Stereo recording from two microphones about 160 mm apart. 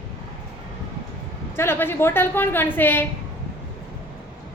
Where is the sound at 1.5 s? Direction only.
15° left (ahead or behind).